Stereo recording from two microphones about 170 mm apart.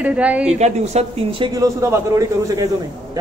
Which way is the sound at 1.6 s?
20° right (ahead or behind).